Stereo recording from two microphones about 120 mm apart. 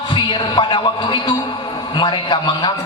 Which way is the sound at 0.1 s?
40° left (ahead or behind).